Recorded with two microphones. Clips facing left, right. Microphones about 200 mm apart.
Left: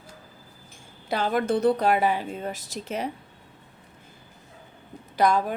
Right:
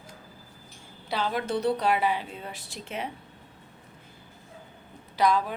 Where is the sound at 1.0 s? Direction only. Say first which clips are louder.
Left 5 dB; 50° left (ahead or behind).